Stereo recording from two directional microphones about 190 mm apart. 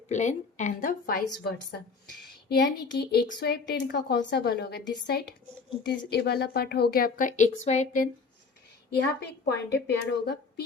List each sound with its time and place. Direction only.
0.1 s speech: 40° left (ahead or behind)
2.5 s a woman's voice: 60° left (ahead or behind); by 8.1 s 40° left (ahead or behind)
9.0 s a woman's voice: 60° left (ahead or behind)